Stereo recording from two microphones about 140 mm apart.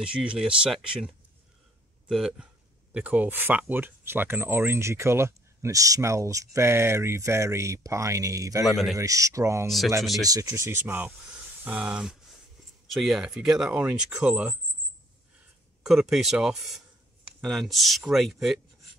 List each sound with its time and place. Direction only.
0.0 s speech: 5° right (ahead or behind); by 8.6 s 25° right (ahead or behind)
8.6 s speech: centre (ahead or behind)
8.9 s speech: 25° right (ahead or behind); by 14.6 s 10° right (ahead or behind)
15.8 s speech: centre (ahead or behind)